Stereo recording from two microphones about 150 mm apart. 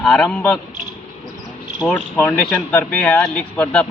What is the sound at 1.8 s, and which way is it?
Speech, 10° left (ahead or behind).